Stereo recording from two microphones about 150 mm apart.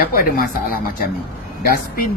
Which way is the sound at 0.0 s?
75° left (ahead or behind).